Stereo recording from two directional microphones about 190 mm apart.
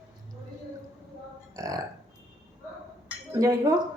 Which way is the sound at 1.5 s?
15° right (ahead or behind).